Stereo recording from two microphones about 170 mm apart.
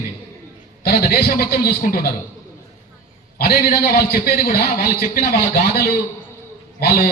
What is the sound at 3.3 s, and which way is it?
A man's voice, 65° left (ahead or behind).